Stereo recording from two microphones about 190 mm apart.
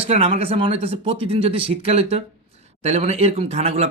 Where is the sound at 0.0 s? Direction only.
30° right (ahead or behind).